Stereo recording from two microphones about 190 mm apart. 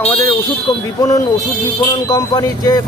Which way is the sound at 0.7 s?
20° left (ahead or behind).